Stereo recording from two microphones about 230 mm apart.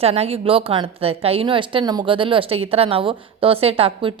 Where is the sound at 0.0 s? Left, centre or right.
Right.